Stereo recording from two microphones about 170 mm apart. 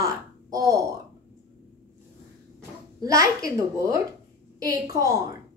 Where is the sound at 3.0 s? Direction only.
20° right (ahead or behind).